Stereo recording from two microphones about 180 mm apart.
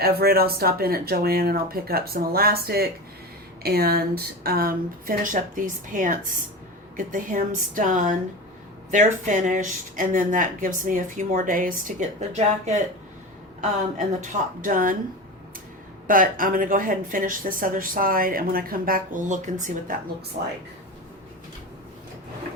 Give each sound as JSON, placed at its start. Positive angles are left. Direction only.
{"t": 0.0, "sound": "a woman's voice", "side_deg": -60}
{"t": 14.2, "sound": "a woman's voice", "side_deg": -45}
{"t": 16.0, "sound": "a woman's voice", "side_deg": -50}